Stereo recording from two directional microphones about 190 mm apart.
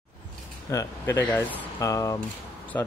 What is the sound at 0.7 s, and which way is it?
Speech, 15° left (ahead or behind).